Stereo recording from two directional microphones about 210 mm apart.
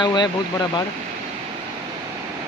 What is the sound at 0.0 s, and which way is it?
Speech, 20° left (ahead or behind).